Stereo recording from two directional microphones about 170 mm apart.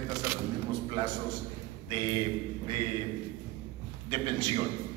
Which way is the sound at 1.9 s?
25° right (ahead or behind).